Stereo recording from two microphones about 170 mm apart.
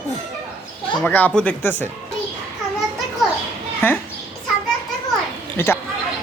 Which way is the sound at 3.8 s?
15° left (ahead or behind).